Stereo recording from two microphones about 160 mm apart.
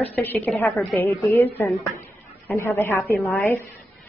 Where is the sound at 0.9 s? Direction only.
15° left (ahead or behind).